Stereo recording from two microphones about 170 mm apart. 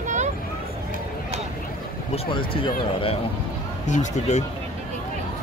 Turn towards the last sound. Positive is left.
turn(degrees=40)  # may be behind; listen again after turning